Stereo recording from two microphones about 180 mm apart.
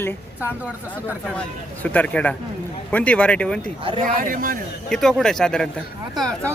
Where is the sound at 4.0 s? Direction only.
50° right (ahead or behind).